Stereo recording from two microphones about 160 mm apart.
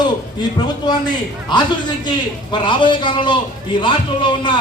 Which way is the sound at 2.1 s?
30° left (ahead or behind).